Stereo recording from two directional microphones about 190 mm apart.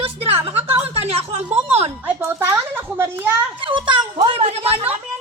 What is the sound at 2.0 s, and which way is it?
A child's voice, 10° right (ahead or behind).